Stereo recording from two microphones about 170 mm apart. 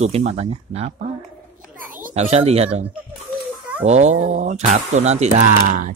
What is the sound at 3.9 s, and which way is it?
Speech, 40° right (ahead or behind).